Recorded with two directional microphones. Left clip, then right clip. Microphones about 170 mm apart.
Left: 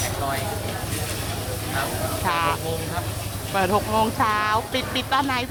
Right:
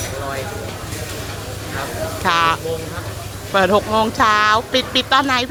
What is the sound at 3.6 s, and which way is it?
Speech, 25° right (ahead or behind).